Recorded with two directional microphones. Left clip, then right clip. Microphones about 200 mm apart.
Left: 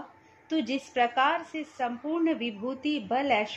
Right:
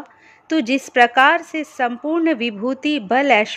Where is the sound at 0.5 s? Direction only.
35° right (ahead or behind).